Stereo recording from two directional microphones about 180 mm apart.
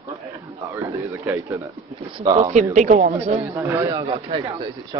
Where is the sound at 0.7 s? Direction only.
15° right (ahead or behind).